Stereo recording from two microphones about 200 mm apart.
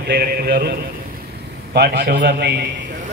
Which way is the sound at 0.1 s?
55° right (ahead or behind).